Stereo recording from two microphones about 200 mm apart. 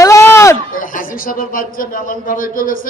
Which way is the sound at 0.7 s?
45° left (ahead or behind).